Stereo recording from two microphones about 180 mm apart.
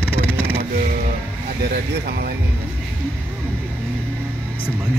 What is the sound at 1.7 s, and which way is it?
Speech, 60° right (ahead or behind).